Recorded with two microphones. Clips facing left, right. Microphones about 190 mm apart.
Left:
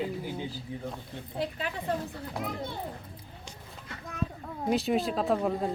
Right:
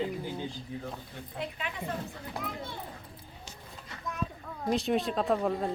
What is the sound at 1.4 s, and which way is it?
Speech, 35° left (ahead or behind).